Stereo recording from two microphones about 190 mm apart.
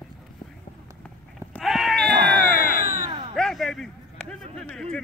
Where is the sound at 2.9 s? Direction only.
25° right (ahead or behind).